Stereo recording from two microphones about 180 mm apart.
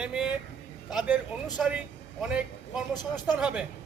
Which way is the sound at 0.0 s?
5° right (ahead or behind).